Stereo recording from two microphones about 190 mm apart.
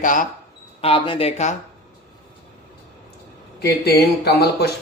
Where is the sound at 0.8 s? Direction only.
30° left (ahead or behind).